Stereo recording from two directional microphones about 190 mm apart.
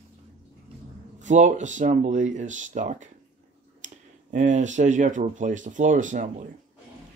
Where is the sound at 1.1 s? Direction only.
40° right (ahead or behind).